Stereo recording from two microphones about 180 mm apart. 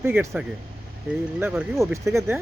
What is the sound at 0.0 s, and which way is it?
Speech, 10° right (ahead or behind).